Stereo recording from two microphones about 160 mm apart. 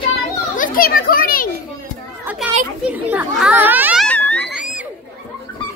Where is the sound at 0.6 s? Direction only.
65° left (ahead or behind).